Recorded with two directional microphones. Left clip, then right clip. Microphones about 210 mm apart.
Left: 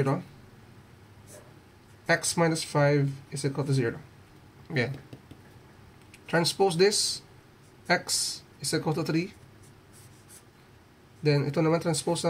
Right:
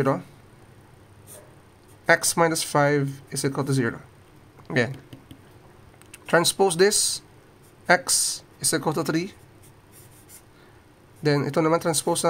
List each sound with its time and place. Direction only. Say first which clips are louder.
2.0 s speech: right 6 dB; 50° right (ahead or behind)
6.2 s speech: right 5 dB; 50° right (ahead or behind)
11.2 s speech: right 4 dB; 50° right (ahead or behind)